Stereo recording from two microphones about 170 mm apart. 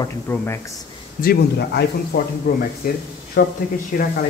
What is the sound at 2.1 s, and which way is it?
Speech, 65° left (ahead or behind).